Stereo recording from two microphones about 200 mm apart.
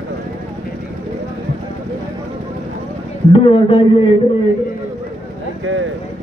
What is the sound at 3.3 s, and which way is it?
Speech, 25° left (ahead or behind).